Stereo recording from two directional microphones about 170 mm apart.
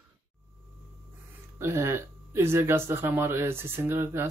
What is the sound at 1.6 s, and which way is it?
Speech, 15° right (ahead or behind).